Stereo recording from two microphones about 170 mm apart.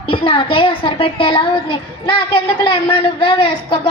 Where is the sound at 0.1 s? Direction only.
30° left (ahead or behind).